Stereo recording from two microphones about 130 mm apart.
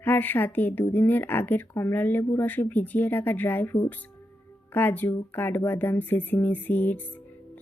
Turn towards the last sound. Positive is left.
turn(degrees=15)  # may be behind; listen again after turning